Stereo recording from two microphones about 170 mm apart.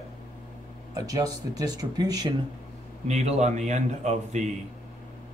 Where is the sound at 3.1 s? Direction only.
40° right (ahead or behind).